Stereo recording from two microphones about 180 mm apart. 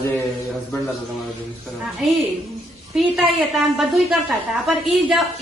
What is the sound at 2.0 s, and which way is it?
A woman's voice, centre (ahead or behind).